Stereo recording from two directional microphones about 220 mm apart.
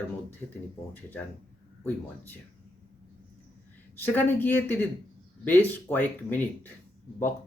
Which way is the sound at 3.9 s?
10° left (ahead or behind).